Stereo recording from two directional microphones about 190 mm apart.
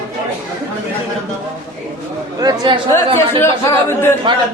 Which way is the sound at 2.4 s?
20° right (ahead or behind).